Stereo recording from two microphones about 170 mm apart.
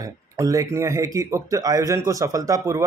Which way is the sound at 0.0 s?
20° right (ahead or behind).